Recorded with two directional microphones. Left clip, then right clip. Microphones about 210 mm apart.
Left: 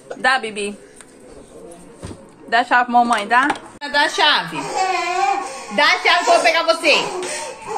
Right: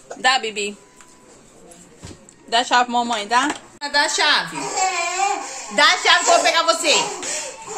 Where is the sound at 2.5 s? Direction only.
20° right (ahead or behind).